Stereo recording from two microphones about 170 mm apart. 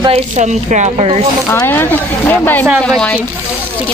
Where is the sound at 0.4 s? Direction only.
45° right (ahead or behind).